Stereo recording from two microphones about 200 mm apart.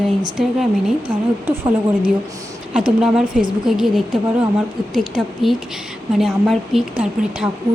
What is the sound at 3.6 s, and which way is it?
Speech, centre (ahead or behind).